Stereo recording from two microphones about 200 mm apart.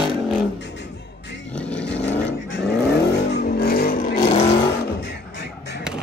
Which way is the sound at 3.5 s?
50° left (ahead or behind).